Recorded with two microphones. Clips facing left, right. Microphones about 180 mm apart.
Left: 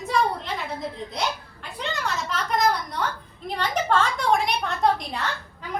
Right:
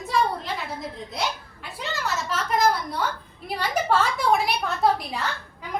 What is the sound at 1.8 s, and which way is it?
A woman's voice, 5° right (ahead or behind).